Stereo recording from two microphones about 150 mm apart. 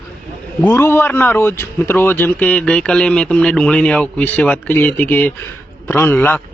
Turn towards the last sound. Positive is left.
turn(degrees=15)  # may be behind; listen again after turning